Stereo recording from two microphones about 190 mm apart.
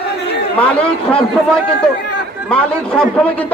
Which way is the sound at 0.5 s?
5° left (ahead or behind).